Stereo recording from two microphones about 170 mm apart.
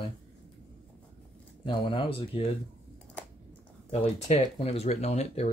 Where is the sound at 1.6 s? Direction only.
30° left (ahead or behind).